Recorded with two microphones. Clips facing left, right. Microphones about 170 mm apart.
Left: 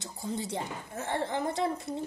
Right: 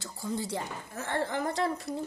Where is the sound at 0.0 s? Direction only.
20° left (ahead or behind).